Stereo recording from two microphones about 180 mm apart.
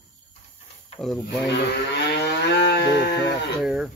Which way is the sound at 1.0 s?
Centre (ahead or behind).